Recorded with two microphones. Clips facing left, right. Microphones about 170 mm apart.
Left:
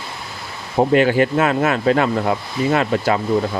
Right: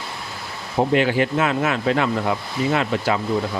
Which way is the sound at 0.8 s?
45° left (ahead or behind).